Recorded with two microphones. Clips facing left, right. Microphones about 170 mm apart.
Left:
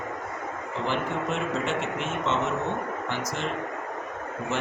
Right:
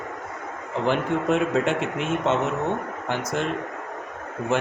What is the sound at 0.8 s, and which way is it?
A man's voice, 55° right (ahead or behind).